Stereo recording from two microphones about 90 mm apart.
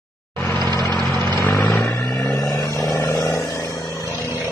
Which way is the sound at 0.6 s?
50° right (ahead or behind).